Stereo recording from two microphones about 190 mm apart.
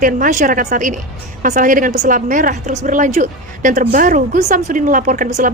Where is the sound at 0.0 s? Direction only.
45° right (ahead or behind).